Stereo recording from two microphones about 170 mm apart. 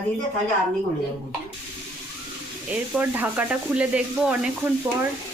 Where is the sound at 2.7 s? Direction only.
10° right (ahead or behind).